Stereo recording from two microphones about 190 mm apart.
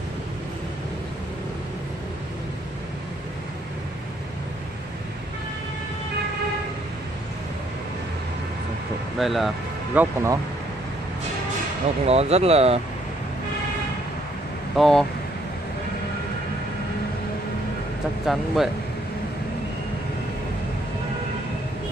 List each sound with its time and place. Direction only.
9.2 s speech: centre (ahead or behind)
9.9 s speech: 15° right (ahead or behind)
12.1 s speech: 35° right (ahead or behind)
14.8 s speech: centre (ahead or behind)
18.2 s speech: centre (ahead or behind)